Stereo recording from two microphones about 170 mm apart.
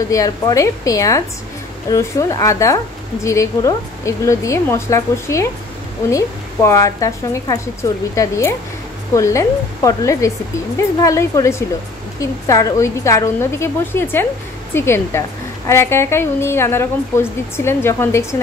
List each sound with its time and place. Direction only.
0.1 s a woman's voice: 20° left (ahead or behind)